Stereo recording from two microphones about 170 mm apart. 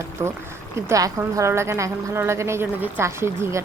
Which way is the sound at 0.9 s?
20° right (ahead or behind).